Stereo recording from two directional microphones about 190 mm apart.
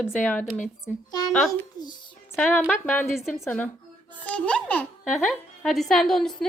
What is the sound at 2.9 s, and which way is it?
Speech, centre (ahead or behind).